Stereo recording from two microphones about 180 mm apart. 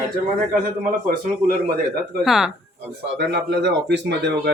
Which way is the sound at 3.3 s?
70° right (ahead or behind).